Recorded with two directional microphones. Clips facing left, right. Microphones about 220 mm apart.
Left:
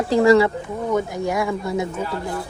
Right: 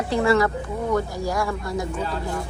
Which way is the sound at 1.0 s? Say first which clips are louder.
Left 3 dB; 20° left (ahead or behind).